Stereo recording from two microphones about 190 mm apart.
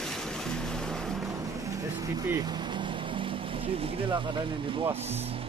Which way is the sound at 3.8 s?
25° right (ahead or behind).